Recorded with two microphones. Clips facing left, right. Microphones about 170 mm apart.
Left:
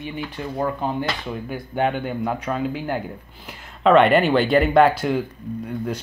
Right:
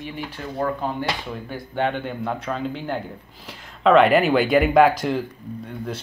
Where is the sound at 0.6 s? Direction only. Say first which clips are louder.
Even; 15° left (ahead or behind).